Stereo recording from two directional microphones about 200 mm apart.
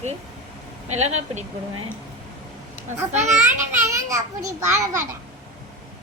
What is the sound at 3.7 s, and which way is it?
A child's voice, 15° right (ahead or behind).